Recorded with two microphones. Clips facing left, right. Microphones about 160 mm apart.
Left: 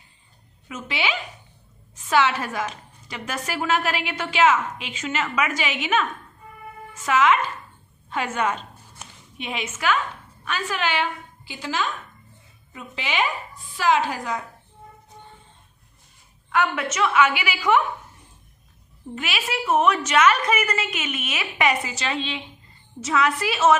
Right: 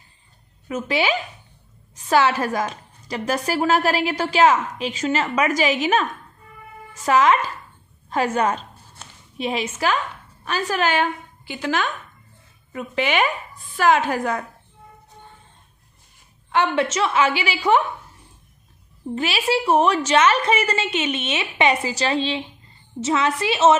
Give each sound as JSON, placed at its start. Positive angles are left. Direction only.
{"t": 0.7, "sound": "a woman's voice", "side_deg": -40}
{"t": 16.5, "sound": "a woman's voice", "side_deg": -30}
{"t": 19.1, "sound": "a woman's voice", "side_deg": -30}